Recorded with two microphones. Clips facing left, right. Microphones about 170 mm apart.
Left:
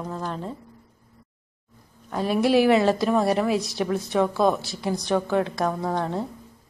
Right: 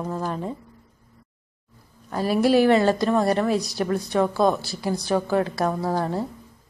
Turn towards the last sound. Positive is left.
turn(degrees=-5)  # may be behind; listen again after turning